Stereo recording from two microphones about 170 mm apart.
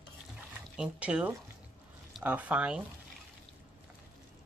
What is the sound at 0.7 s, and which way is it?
Speech, 10° right (ahead or behind).